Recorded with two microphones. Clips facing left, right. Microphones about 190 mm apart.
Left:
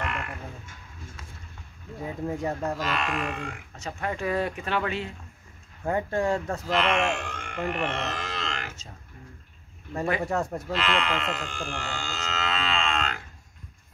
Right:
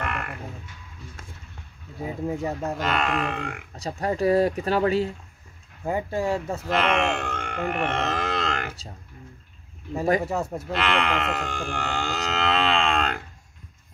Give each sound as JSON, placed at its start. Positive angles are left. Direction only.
{"t": 0.0, "sound": "a sound", "side_deg": -55}
{"t": 2.2, "sound": "speech", "side_deg": -10}
{"t": 2.8, "sound": "speech", "side_deg": -60}
{"t": 3.7, "sound": "speech", "side_deg": -35}
{"t": 5.9, "sound": "speech", "side_deg": -10}
{"t": 6.7, "sound": "speech", "side_deg": -60}
{"t": 10.2, "sound": "speech", "side_deg": -5}
{"t": 10.8, "sound": "speech", "side_deg": -60}